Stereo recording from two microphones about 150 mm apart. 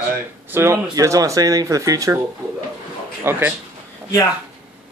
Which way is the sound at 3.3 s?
15° right (ahead or behind).